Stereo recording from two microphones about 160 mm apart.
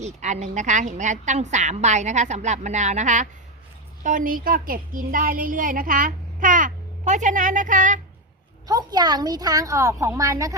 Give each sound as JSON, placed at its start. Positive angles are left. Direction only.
{"t": 0.0, "sound": "a woman's voice", "side_deg": -45}
{"t": 8.6, "sound": "a woman's voice", "side_deg": -25}